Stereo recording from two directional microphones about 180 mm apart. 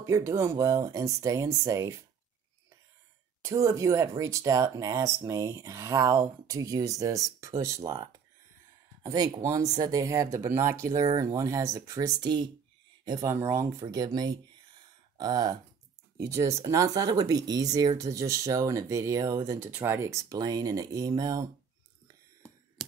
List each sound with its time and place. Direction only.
0.0 s speech: 15° right (ahead or behind)
3.4 s speech: 20° right (ahead or behind)
22.8 s a sound: centre (ahead or behind)